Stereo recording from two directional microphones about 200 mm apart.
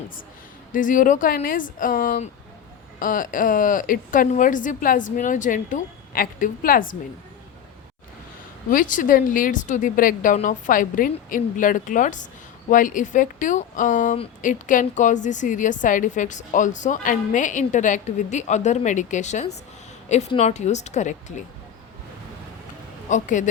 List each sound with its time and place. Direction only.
0.7 s a woman's voice: 40° left (ahead or behind)
8.7 s speech: 40° left (ahead or behind)
23.0 s speech: 40° left (ahead or behind)